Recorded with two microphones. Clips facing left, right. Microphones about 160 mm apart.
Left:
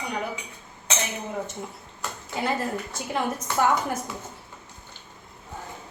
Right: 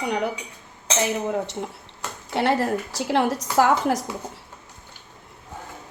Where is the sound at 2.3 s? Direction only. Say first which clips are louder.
Right 6 dB; 75° right (ahead or behind).